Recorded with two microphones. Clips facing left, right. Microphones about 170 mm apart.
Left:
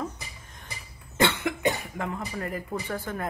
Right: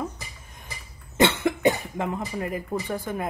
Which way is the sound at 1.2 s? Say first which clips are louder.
Right 4 dB; 20° right (ahead or behind).